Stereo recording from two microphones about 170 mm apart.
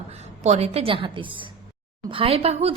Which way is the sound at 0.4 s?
40° right (ahead or behind).